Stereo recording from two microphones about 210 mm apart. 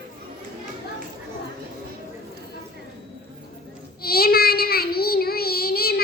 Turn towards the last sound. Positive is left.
turn(degrees=45)  # may be behind; listen again after turning